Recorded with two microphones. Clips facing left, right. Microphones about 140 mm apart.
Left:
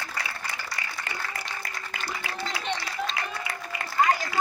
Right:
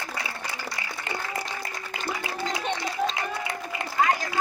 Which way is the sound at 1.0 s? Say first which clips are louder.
Right 7 dB; 25° right (ahead or behind).